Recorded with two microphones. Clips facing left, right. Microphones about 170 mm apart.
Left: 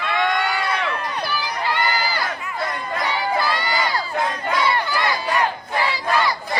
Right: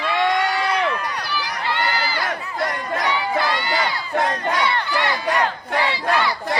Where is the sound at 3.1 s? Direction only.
40° left (ahead or behind).